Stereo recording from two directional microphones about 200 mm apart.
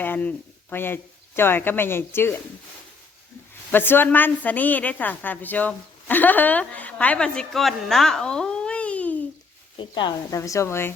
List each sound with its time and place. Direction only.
0.0 s a woman's voice: 10° left (ahead or behind)
3.7 s a woman's voice: 10° left (ahead or behind)
9.7 s a woman's voice: 20° left (ahead or behind)